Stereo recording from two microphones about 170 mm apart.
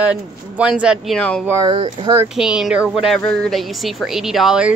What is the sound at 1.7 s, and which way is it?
Speech, 30° right (ahead or behind).